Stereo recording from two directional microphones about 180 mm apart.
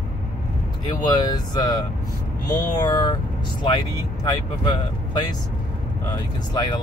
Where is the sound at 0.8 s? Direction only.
25° left (ahead or behind).